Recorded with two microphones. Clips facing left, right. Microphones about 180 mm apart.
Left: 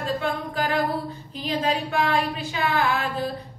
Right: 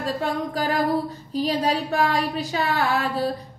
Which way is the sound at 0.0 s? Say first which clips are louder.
Right 1 dB; 40° right (ahead or behind).